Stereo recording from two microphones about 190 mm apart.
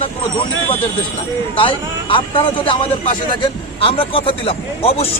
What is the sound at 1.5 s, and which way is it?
Speech, 25° left (ahead or behind).